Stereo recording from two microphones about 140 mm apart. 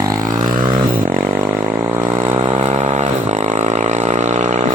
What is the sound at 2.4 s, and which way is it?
Vehicle, 35° right (ahead or behind).